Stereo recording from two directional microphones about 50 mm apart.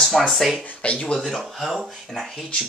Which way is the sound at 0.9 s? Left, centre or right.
Centre.